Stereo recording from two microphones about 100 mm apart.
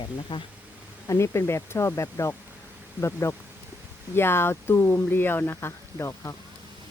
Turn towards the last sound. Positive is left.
turn(degrees=30)  # may be behind; listen again after turning